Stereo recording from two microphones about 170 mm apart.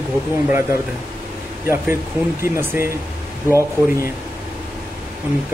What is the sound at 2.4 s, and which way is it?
Speech, 15° right (ahead or behind).